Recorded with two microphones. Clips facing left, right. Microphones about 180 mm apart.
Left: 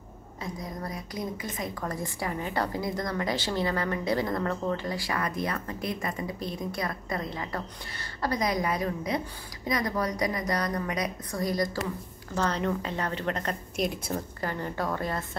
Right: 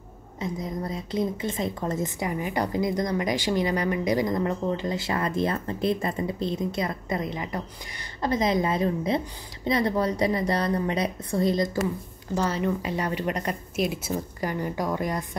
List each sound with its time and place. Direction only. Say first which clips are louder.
0.4 s a woman's voice: right 5 dB; 20° right (ahead or behind)
12.4 s a woman's voice: right 2 dB; 5° right (ahead or behind)